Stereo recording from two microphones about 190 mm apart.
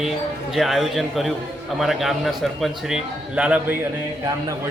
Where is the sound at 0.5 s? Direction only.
Centre (ahead or behind).